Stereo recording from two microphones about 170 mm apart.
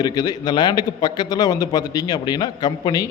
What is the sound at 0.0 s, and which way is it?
A man's voice, 20° left (ahead or behind).